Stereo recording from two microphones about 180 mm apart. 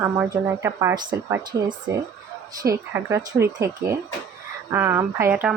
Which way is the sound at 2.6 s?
15° right (ahead or behind).